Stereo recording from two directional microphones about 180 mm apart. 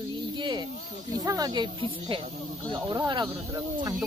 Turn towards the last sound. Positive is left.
turn(degrees=-20)  # may be behind; listen again after turning